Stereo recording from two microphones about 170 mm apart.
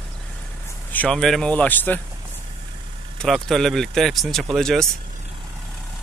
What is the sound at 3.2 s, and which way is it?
Speech, centre (ahead or behind).